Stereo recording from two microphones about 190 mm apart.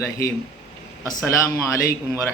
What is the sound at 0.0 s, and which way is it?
Speech, 15° left (ahead or behind).